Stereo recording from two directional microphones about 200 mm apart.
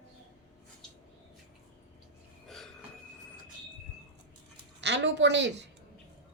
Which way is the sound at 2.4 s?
Centre (ahead or behind).